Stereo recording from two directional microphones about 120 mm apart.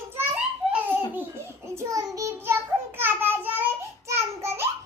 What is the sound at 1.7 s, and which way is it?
Child singing, 30° right (ahead or behind).